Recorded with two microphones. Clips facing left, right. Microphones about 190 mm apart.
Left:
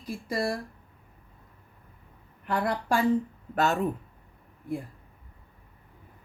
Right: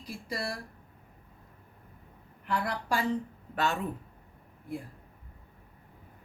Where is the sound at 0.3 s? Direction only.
45° left (ahead or behind).